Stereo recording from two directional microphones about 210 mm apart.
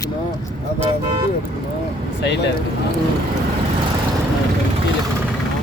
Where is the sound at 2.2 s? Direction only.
55° left (ahead or behind).